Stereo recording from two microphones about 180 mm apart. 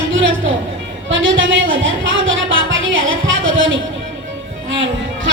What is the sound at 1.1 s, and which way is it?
Speech, 90° right.